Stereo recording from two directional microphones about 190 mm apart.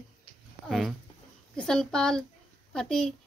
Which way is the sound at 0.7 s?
Centre (ahead or behind).